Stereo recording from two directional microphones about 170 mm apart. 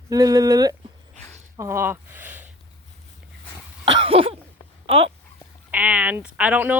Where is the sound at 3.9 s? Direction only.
30° right (ahead or behind).